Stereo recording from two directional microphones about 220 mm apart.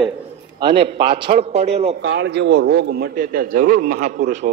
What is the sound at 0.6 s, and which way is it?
A man's voice, 20° right (ahead or behind).